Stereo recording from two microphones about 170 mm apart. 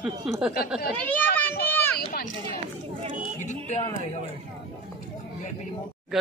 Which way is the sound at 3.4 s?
45° left (ahead or behind).